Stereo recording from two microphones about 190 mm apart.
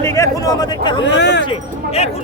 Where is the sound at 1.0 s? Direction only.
65° left (ahead or behind).